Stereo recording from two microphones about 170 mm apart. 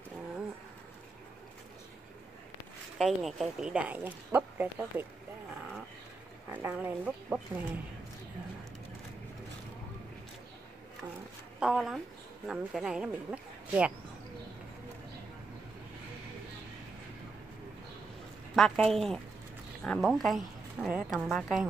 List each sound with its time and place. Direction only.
3.0 s speech: centre (ahead or behind)
6.5 s speech: 10° right (ahead or behind)
11.6 s a woman's voice: 5° right (ahead or behind)
18.6 s a woman's voice: centre (ahead or behind)